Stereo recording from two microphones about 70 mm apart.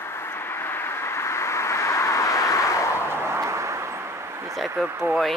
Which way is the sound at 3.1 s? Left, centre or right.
Right.